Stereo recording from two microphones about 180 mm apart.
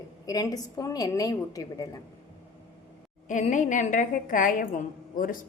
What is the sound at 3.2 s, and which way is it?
A woman's voice, 45° left (ahead or behind).